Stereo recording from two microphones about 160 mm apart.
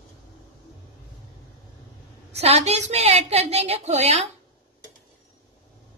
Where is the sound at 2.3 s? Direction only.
40° right (ahead or behind).